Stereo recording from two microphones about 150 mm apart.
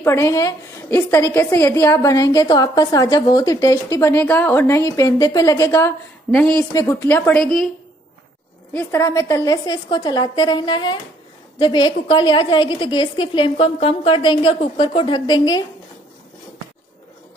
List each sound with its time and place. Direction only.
0.0 s a woman's voice: 20° left (ahead or behind)
6.7 s a woman's voice: 20° left (ahead or behind); by 7.7 s 5° left (ahead or behind)
8.7 s a woman's voice: 20° left (ahead or behind)